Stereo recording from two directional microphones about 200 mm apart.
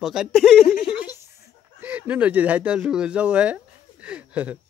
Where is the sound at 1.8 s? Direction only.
10° right (ahead or behind).